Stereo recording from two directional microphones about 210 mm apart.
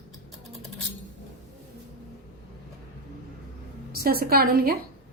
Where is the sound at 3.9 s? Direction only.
45° right (ahead or behind).